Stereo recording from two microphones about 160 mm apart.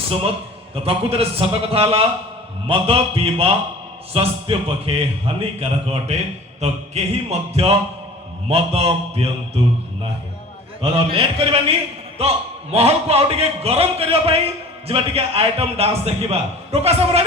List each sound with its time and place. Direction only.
0.1 s a man's voice: 35° right (ahead or behind)
10.9 s a man's voice: 35° right (ahead or behind)
12.7 s a man's voice: 40° right (ahead or behind)